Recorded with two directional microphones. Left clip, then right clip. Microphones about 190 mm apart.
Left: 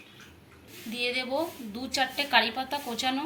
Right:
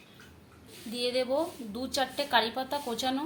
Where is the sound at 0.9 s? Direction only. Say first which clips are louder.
Even; 45° right (ahead or behind).